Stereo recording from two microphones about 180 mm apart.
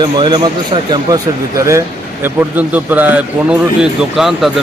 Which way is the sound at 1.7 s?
15° right (ahead or behind).